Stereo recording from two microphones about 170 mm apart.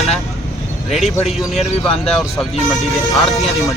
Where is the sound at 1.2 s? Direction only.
Centre (ahead or behind).